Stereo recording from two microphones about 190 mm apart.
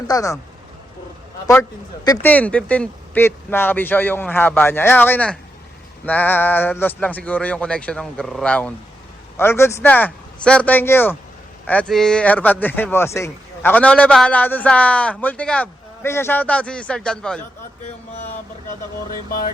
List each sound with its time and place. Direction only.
0.1 s speech: 20° left (ahead or behind)
2.2 s speech: 10° left (ahead or behind)